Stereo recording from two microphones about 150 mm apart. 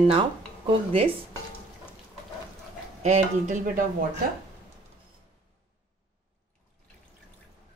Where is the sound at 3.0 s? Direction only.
50° right (ahead or behind).